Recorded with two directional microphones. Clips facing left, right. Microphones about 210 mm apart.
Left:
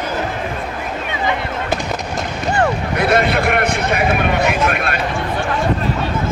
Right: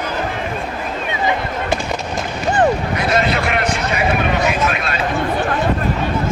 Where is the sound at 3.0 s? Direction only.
55° left (ahead or behind).